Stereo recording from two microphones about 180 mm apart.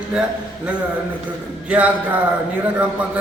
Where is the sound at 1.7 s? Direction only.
10° right (ahead or behind).